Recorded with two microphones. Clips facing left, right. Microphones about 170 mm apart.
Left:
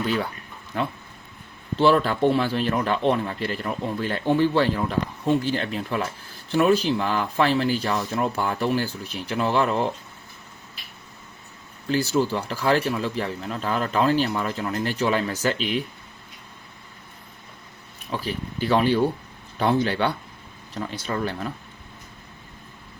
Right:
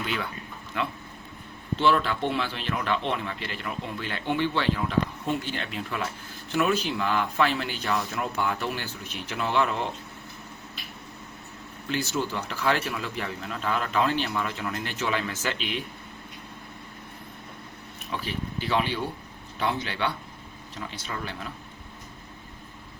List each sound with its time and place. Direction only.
0.0 s speech: 40° left (ahead or behind)
1.8 s speech: 40° left (ahead or behind)
11.9 s speech: 35° left (ahead or behind)
18.1 s speech: 40° left (ahead or behind)